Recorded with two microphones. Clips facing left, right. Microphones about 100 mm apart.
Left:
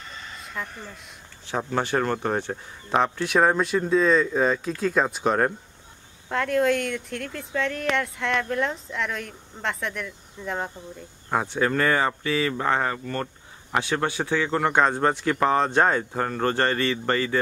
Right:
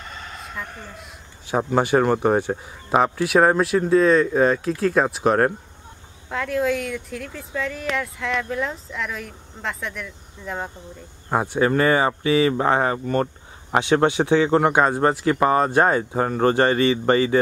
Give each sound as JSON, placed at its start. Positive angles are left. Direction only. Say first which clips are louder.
{"t": 1.6, "sound": "speech", "louder": "right 6 dB", "side_deg": -15}
{"t": 11.2, "sound": "speech", "louder": "right 4 dB", "side_deg": -15}
{"t": 14.0, "sound": "a man's voice", "louder": "right 7 dB", "side_deg": -20}
{"t": 14.7, "sound": "speech", "louder": "right 3 dB", "side_deg": -10}